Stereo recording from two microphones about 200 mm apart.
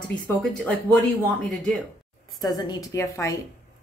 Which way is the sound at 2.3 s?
20° left (ahead or behind).